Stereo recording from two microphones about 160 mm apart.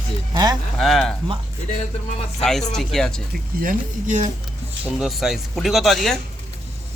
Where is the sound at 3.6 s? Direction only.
55° right (ahead or behind).